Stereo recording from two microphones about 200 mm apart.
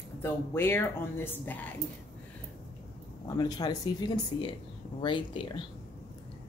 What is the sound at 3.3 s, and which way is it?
Speech, 20° left (ahead or behind).